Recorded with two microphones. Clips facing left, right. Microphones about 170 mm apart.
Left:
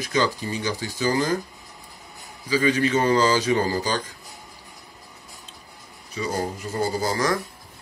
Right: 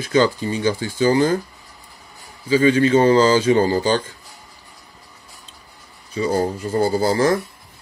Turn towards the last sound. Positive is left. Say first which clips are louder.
# right 6 dB
turn(degrees=-30)  # may be behind; listen again after turning